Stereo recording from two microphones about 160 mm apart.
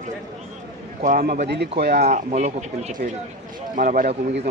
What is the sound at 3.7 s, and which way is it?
Speech, 60° right (ahead or behind).